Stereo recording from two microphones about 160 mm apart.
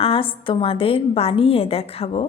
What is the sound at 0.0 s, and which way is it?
A woman's voice, 35° left (ahead or behind).